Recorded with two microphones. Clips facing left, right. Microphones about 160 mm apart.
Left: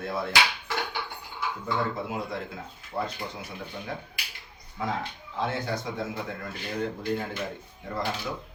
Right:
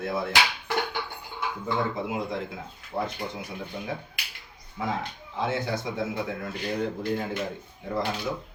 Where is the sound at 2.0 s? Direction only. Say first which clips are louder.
Right 2 dB; 15° right (ahead or behind).